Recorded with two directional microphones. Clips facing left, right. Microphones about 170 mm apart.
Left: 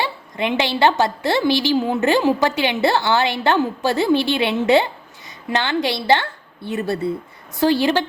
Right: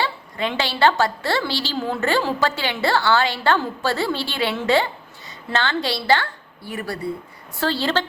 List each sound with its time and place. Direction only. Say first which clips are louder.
0.0 s a woman's voice: left 2 dB; 20° left (ahead or behind)